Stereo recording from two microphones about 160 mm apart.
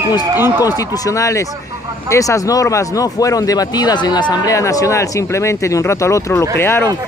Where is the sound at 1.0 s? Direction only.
20° left (ahead or behind).